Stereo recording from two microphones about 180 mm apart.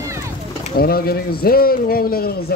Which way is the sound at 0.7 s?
55° left (ahead or behind).